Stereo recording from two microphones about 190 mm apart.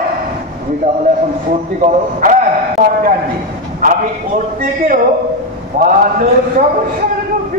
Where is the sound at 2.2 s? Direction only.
45° right (ahead or behind).